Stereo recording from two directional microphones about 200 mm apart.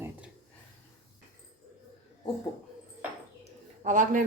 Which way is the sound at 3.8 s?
40° right (ahead or behind).